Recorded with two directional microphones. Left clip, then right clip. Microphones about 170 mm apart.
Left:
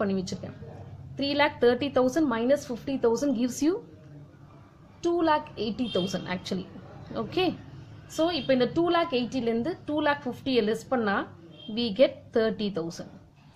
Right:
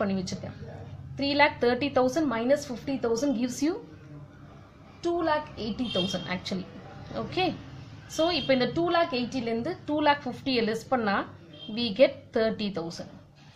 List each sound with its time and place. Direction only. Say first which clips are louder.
1.1 s a woman's voice: right 2 dB; 30° left (ahead or behind)
5.0 s a woman's voice: left 2 dB; 45° left (ahead or behind); by 13.0 s 30° left (ahead or behind)